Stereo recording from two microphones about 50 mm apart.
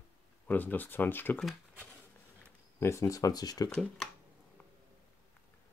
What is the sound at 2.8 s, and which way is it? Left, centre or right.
Speech, left.